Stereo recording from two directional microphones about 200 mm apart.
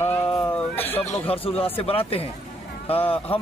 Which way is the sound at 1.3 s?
30° left (ahead or behind).